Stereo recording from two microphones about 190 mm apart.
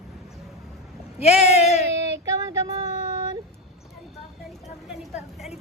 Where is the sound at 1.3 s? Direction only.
35° left (ahead or behind).